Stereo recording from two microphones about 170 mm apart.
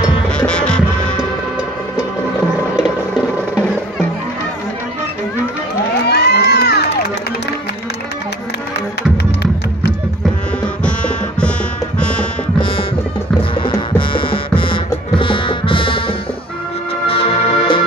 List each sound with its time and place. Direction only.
0.4 s music: 5° left (ahead or behind)
6.0 s crowd: 75° left (ahead or behind)
10.8 s music: 5° left (ahead or behind)
13.4 s music: 30° left (ahead or behind)